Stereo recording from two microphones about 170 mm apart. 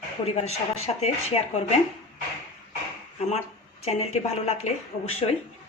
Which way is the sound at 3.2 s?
40° left (ahead or behind).